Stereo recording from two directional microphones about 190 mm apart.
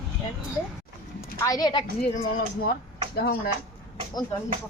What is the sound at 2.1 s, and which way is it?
Speech, 50° left (ahead or behind).